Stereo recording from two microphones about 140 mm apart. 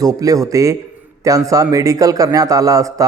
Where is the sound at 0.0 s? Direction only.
25° right (ahead or behind).